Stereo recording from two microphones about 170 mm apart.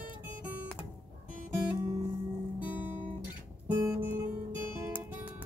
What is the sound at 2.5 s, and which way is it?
Guitar, 10° right (ahead or behind).